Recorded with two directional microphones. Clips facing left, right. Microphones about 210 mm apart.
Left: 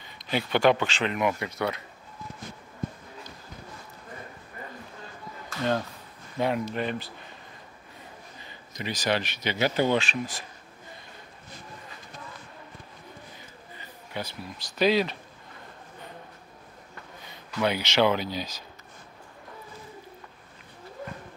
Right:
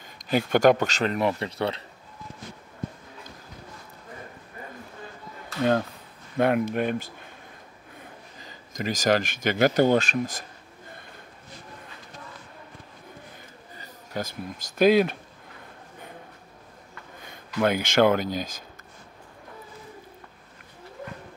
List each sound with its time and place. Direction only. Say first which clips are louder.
0.0 s speech: right 5 dB; 45° right (ahead or behind); by 1.8 s 30° right (ahead or behind)
6.3 s speech: right 5 dB; 55° right (ahead or behind)
13.7 s speech: right 3 dB; 45° right (ahead or behind)
17.2 s speech: right 3 dB; 50° right (ahead or behind)